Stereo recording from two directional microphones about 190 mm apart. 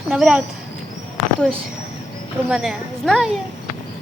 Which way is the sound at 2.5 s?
5° right (ahead or behind).